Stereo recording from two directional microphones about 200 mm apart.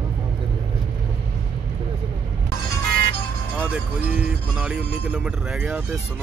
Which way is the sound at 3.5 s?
10° right (ahead or behind).